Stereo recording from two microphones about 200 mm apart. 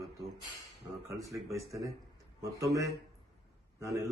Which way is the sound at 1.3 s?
15° right (ahead or behind).